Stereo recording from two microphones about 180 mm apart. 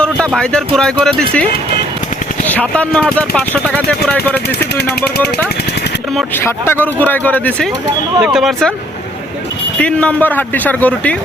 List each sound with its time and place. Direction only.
0.0 s speech: 5° left (ahead or behind)
2.5 s speech: 10° left (ahead or behind)
4.4 s speech: 65° left (ahead or behind)
6.3 s speech: 10° left (ahead or behind)
8.2 s speech: centre (ahead or behind)
9.7 s speech: 5° left (ahead or behind)